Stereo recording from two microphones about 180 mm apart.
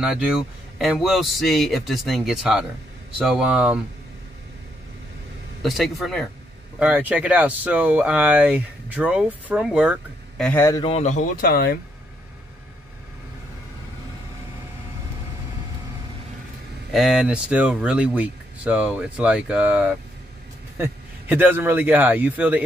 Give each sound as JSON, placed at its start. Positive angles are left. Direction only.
{"t": 0.0, "sound": "a man's voice", "side_deg": -5}
{"t": 5.6, "sound": "a man's voice", "side_deg": 0}
{"t": 10.4, "sound": "a man's voice", "side_deg": 15}
{"t": 10.8, "sound": "speech", "side_deg": 35}
{"t": 11.4, "sound": "speech", "side_deg": 55}
{"t": 16.9, "sound": "a man's voice", "side_deg": 0}